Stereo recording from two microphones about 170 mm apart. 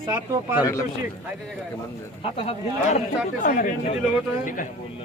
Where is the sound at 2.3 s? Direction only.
35° left (ahead or behind).